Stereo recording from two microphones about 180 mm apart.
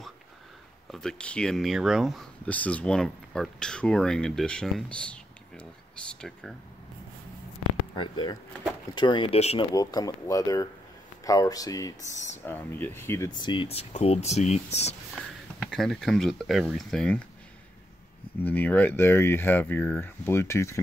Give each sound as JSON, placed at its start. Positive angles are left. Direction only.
{"t": 0.9, "sound": "speech", "side_deg": 5}
{"t": 7.9, "sound": "speech", "side_deg": 25}
{"t": 9.8, "sound": "speech", "side_deg": 20}
{"t": 12.0, "sound": "speech", "side_deg": 40}
{"t": 12.4, "sound": "speech", "side_deg": 10}
{"t": 15.7, "sound": "speech", "side_deg": 0}
{"t": 18.4, "sound": "speech", "side_deg": 10}